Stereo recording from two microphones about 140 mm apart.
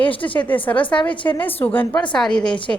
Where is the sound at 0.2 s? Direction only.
10° left (ahead or behind).